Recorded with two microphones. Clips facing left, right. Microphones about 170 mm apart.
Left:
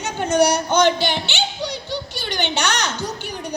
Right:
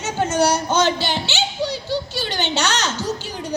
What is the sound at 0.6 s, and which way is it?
Speech, 60° left (ahead or behind).